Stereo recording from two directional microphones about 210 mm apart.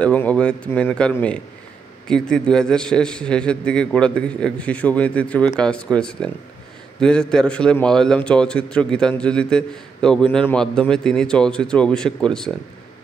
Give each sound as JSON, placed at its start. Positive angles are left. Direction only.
{"t": 0.0, "sound": "a man's voice", "side_deg": 5}